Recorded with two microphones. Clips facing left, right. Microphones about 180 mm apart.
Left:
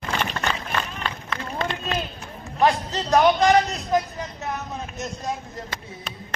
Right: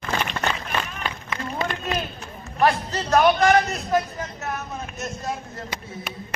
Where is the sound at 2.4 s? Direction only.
15° left (ahead or behind).